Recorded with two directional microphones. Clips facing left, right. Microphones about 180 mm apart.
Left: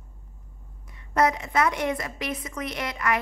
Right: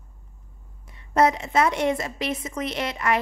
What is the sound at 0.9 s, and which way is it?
A woman's voice, 25° right (ahead or behind).